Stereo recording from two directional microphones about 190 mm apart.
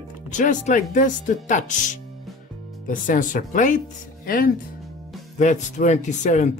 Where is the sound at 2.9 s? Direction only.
45° left (ahead or behind).